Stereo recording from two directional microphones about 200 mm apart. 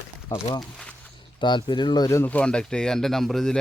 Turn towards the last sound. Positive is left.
turn(degrees=0)  # may be behind; listen again after turning